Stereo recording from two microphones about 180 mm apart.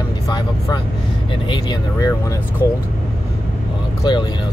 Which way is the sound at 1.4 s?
25° left (ahead or behind).